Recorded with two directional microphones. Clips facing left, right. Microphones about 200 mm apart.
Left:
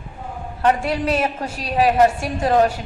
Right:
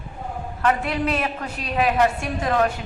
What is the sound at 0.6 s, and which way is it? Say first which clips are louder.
A woman's voice: left 3 dB; 30° left (ahead or behind).